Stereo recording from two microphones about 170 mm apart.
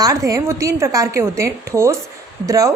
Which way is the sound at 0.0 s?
20° right (ahead or behind).